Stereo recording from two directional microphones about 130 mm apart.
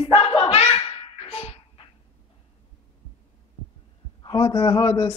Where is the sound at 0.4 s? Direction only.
50° left (ahead or behind).